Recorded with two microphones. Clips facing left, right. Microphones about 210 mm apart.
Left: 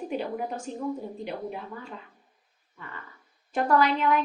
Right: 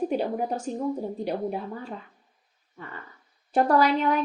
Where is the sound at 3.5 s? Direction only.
35° right (ahead or behind).